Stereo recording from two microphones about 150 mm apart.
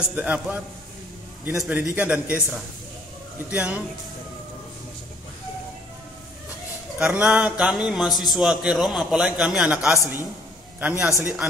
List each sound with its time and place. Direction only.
0.1 s speech: 10° right (ahead or behind)
1.6 s speech: 5° right (ahead or behind)
7.0 s a man's voice: 10° right (ahead or behind)